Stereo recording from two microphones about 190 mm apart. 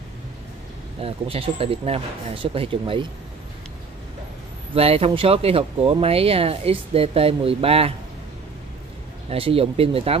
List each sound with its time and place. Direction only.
1.0 s speech: 30° right (ahead or behind)
4.7 s speech: 30° right (ahead or behind)
9.3 s speech: 30° right (ahead or behind)